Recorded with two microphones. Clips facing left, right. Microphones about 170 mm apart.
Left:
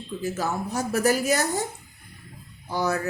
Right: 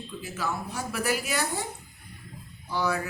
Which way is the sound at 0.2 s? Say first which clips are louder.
Left 5 dB; 40° left (ahead or behind).